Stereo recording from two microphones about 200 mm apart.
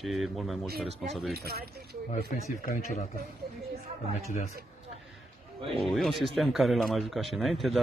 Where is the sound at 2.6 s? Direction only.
40° left (ahead or behind).